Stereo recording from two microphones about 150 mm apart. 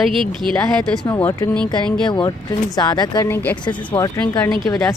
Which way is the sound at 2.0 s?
30° left (ahead or behind).